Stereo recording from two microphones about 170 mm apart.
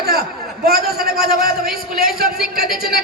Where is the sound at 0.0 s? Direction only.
65° right (ahead or behind).